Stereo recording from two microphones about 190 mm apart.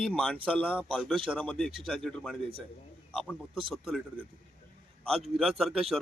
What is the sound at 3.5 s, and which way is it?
Speech, 25° right (ahead or behind).